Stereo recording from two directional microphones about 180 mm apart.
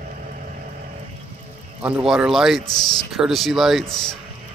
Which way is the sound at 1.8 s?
5° right (ahead or behind).